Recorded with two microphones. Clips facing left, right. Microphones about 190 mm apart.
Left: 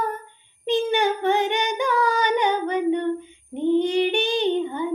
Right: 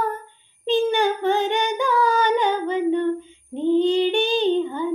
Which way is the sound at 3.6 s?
20° left (ahead or behind).